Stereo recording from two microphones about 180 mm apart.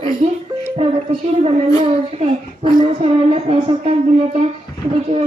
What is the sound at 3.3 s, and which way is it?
Speech, 35° right (ahead or behind).